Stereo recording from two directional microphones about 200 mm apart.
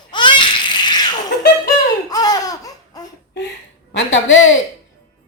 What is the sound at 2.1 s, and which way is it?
Laughter, 20° left (ahead or behind).